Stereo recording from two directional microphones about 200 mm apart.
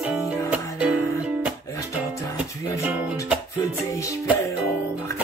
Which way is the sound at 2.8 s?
10° right (ahead or behind).